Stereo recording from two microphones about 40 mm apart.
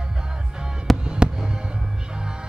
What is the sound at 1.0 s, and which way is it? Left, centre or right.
Fireworks, right.